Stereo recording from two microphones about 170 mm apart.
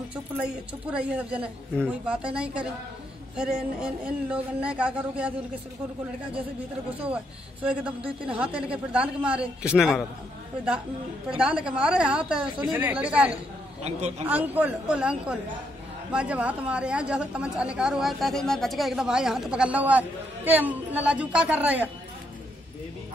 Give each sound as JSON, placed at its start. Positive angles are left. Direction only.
{"t": 0.9, "sound": "speech", "side_deg": -5}
{"t": 7.6, "sound": "speech", "side_deg": -5}
{"t": 11.2, "sound": "a woman's voice", "side_deg": -5}
{"t": 13.8, "sound": "speech", "side_deg": -40}
{"t": 14.2, "sound": "speech", "side_deg": -10}